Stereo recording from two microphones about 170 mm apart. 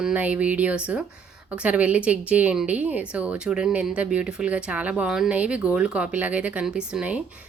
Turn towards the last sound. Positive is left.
turn(degrees=-5)  # may be behind; listen again after turning